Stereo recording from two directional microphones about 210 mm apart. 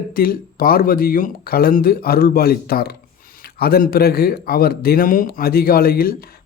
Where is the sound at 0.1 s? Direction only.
45° left (ahead or behind).